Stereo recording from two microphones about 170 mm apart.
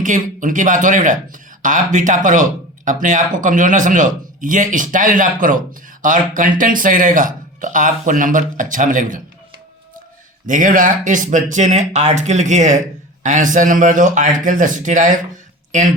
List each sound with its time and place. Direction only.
0.0 s speech: 50° right (ahead or behind)
10.4 s speech: 50° right (ahead or behind)